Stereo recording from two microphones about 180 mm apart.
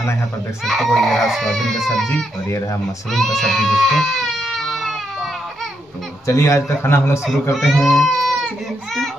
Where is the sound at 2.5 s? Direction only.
15° left (ahead or behind).